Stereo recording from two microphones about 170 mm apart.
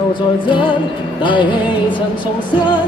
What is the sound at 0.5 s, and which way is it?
Music, 30° left (ahead or behind).